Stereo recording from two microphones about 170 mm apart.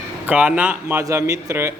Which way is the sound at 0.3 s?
10° right (ahead or behind).